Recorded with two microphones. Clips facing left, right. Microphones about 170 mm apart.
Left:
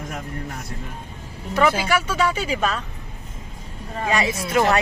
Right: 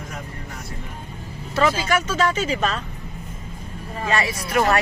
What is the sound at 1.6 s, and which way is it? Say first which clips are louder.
Speech: left 1 dB; 10° left (ahead or behind).